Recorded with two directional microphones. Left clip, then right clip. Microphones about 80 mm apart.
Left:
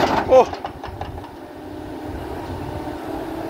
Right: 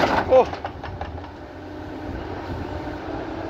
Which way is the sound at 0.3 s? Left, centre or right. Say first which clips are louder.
Left 3 dB; left.